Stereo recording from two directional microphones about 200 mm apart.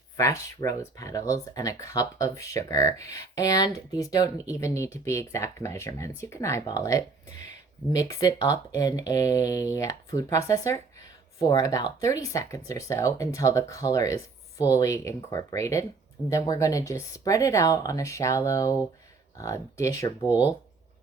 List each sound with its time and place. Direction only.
0.2 s speech: 15° left (ahead or behind)
20.2 s speech: 10° right (ahead or behind)